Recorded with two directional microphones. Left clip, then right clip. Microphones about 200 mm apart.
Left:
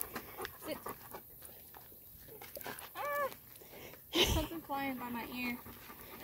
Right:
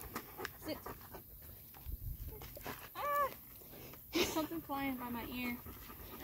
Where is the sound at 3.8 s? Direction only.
15° left (ahead or behind).